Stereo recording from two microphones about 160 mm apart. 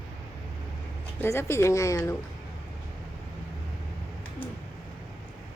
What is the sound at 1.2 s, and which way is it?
Speech, 15° left (ahead or behind).